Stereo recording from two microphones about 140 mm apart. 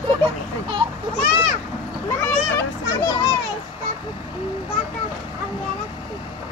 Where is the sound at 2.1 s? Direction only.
20° left (ahead or behind).